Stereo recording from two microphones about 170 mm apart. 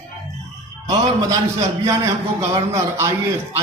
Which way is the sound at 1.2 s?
20° right (ahead or behind).